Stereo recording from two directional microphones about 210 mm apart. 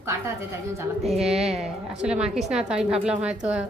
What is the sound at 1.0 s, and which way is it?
Speech, centre (ahead or behind).